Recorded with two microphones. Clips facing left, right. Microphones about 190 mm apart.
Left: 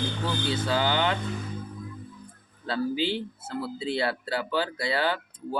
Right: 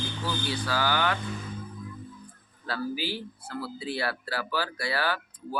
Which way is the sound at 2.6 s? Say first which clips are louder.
Left 5 dB; 25° left (ahead or behind).